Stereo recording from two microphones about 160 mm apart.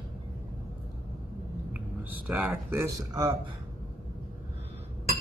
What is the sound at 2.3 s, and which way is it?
Speech, 10° right (ahead or behind).